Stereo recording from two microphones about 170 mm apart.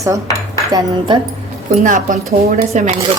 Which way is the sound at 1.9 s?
45° right (ahead or behind).